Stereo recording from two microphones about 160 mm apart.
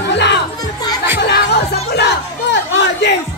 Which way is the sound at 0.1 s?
90° left.